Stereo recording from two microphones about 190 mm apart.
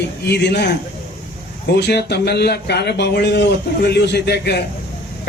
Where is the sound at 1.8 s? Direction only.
60° left (ahead or behind).